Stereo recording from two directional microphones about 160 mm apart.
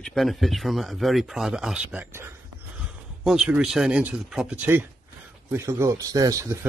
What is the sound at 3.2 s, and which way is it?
Speech, 5° right (ahead or behind).